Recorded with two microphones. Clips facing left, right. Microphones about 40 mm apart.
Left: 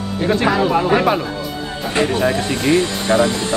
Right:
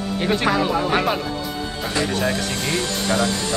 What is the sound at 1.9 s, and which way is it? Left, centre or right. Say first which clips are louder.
Speech: left 6 dB; left.